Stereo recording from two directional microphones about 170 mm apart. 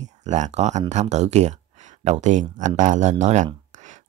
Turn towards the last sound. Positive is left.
turn(degrees=-45)  # may be behind; listen again after turning